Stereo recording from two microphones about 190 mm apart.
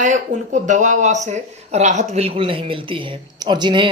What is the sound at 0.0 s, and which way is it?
Speech, 40° right (ahead or behind).